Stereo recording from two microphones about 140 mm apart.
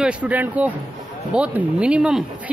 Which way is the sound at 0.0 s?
10° right (ahead or behind).